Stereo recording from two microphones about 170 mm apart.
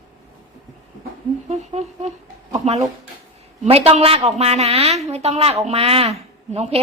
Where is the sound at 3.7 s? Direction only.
35° right (ahead or behind).